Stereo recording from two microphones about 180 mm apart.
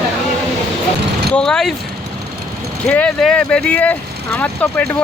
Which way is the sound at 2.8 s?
5° left (ahead or behind).